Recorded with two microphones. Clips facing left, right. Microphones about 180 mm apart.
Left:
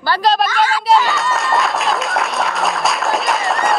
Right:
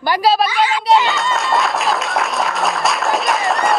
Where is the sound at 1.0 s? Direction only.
Centre (ahead or behind).